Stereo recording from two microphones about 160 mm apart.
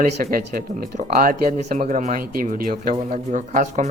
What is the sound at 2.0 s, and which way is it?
Speech, 60° right (ahead or behind).